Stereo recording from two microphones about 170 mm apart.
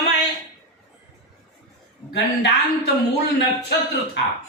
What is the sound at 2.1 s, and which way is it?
Speech, 75° left (ahead or behind).